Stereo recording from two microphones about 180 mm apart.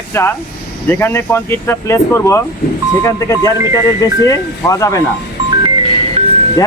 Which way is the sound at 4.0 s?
15° left (ahead or behind).